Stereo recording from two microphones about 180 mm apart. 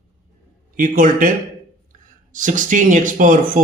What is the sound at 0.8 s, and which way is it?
A man's voice, 50° right (ahead or behind).